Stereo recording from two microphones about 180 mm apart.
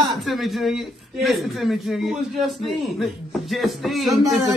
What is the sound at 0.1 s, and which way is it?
A man's voice, centre (ahead or behind).